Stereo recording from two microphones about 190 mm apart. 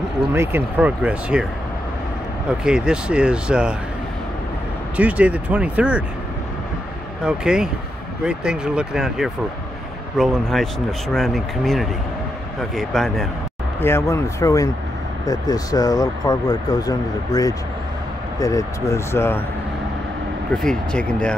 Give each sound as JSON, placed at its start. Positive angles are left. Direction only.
{"t": 0.3, "sound": "speech", "side_deg": -10}
{"t": 2.6, "sound": "speech", "side_deg": -5}
{"t": 4.9, "sound": "speech", "side_deg": -5}
{"t": 7.2, "sound": "speech", "side_deg": -5}
{"t": 13.7, "sound": "speech", "side_deg": 10}
{"t": 20.5, "sound": "speech", "side_deg": 5}